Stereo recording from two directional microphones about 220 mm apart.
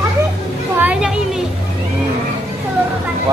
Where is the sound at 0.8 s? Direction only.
5° right (ahead or behind).